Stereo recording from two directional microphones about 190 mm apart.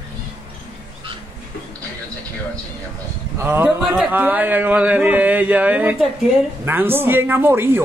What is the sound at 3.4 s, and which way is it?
Speech, 10° right (ahead or behind).